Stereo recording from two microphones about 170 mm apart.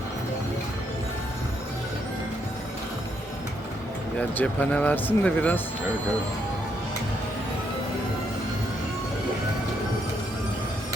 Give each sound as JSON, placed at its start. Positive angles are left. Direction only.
{"t": 4.2, "sound": "speech", "side_deg": 10}